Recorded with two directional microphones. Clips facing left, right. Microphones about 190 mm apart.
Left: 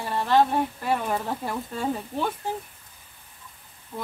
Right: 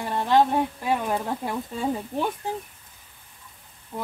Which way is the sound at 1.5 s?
15° right (ahead or behind).